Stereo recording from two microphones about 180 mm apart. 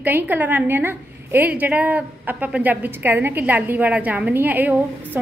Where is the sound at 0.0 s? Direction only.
10° right (ahead or behind).